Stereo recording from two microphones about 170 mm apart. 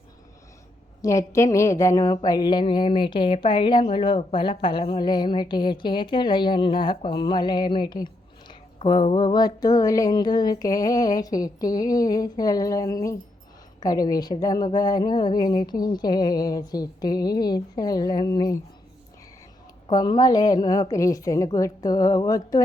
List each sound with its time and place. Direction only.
1.0 s speech: 15° left (ahead or behind)
19.9 s speech: 25° left (ahead or behind)